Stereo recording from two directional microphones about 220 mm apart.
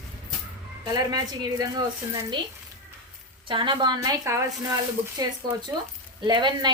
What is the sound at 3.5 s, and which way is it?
Speech, 20° right (ahead or behind).